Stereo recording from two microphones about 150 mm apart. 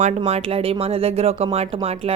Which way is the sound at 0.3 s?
45° right (ahead or behind).